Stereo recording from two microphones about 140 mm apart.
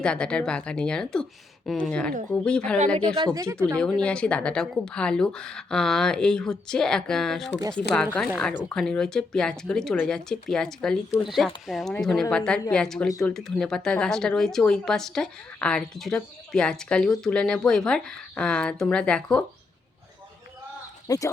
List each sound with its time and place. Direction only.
0.0 s speech: 5° left (ahead or behind)
3.2 s speech: 25° right (ahead or behind)
4.0 s speech: 10° left (ahead or behind)
21.1 s speech: 25° left (ahead or behind)